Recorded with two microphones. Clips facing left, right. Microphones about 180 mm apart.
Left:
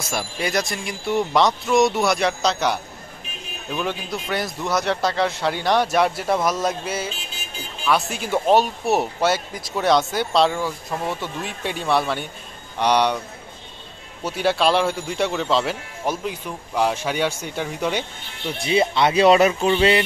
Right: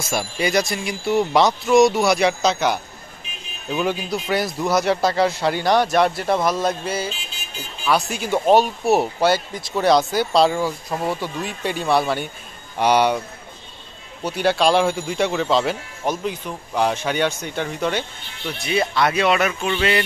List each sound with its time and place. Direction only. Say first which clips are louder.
0.1 s speech: right 4 dB; centre (ahead or behind)
14.2 s speech: right 1 dB; centre (ahead or behind)
18.6 s speech: left 1 dB; 25° left (ahead or behind)